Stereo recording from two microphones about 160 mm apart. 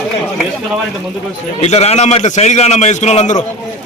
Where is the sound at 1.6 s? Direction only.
40° left (ahead or behind).